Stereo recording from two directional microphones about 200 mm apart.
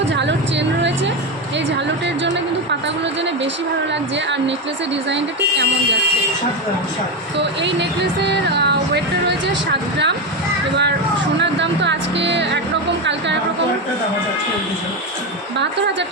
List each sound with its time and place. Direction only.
0.1 s vehicle: 60° right (ahead or behind)
5.0 s speech: 60° right (ahead or behind)
7.3 s speech: 60° right (ahead or behind)
11.3 s speech: 60° right (ahead or behind)